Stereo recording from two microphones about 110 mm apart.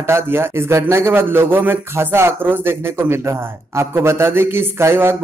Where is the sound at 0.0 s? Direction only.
20° right (ahead or behind).